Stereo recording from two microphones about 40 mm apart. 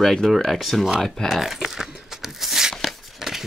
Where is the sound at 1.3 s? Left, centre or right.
Centre.